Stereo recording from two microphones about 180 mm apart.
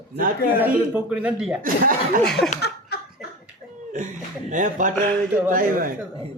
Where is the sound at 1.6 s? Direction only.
50° right (ahead or behind).